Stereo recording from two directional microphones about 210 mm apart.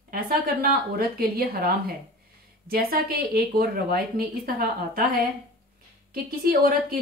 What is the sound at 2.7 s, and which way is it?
Speech, 45° right (ahead or behind).